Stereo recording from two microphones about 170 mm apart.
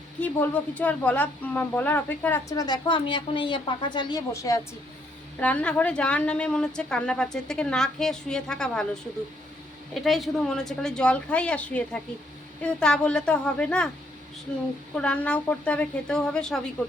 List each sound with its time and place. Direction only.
0.2 s speech: 10° left (ahead or behind)
5.4 s a woman's voice: 10° left (ahead or behind)
9.9 s a woman's voice: centre (ahead or behind)
14.9 s a woman's voice: 5° left (ahead or behind)